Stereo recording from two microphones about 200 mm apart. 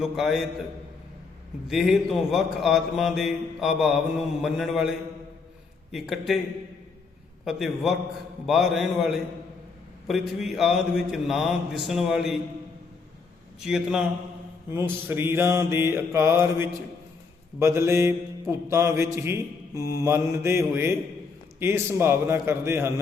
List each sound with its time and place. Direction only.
0.0 s a man's voice: centre (ahead or behind)
1.6 s a man's voice: centre (ahead or behind)
7.4 s a man's voice: centre (ahead or behind)
13.6 s a man's voice: centre (ahead or behind)
14.7 s mantra: 10° right (ahead or behind)